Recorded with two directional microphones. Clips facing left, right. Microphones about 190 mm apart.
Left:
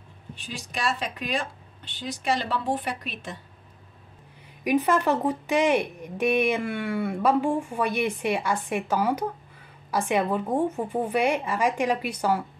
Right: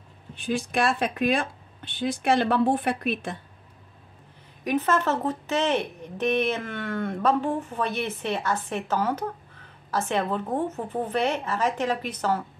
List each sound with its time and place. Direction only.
0.4 s speech: 55° right (ahead or behind)
4.6 s speech: 15° left (ahead or behind)